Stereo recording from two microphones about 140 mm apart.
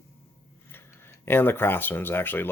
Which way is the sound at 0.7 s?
15° left (ahead or behind).